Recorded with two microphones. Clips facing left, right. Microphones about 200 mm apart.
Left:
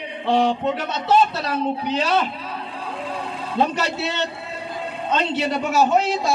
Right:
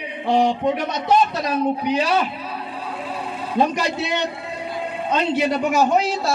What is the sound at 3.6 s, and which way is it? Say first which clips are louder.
A man's voice: right 2 dB; 15° right (ahead or behind).